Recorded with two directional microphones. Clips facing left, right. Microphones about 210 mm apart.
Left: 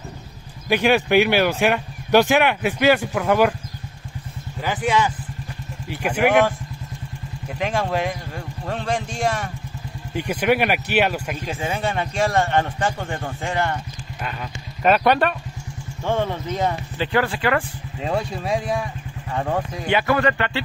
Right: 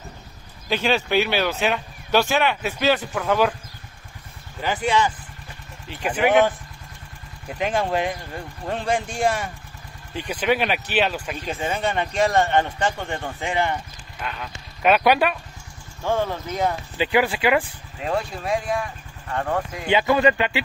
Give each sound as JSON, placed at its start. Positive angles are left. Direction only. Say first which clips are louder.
{"t": 0.7, "sound": "speech", "louder": "left 4 dB", "side_deg": 15}
{"t": 4.6, "sound": "speech", "louder": "left 1 dB", "side_deg": 5}
{"t": 7.5, "sound": "speech", "louder": "even", "side_deg": 0}
{"t": 10.1, "sound": "speech", "louder": "left 3 dB", "side_deg": 10}
{"t": 13.5, "sound": "speech", "louder": "even", "side_deg": -15}
{"t": 14.2, "sound": "speech", "louder": "left 1 dB", "side_deg": 5}
{"t": 19.3, "sound": "speech", "louder": "left 1 dB", "side_deg": 5}
{"t": 19.9, "sound": "speech", "louder": "right 1 dB", "side_deg": -20}